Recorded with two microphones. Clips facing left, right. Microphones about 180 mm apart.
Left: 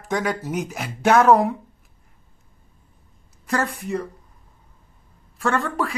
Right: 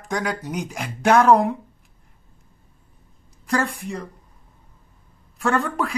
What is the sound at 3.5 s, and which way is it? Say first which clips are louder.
Speech: even; 5° left (ahead or behind).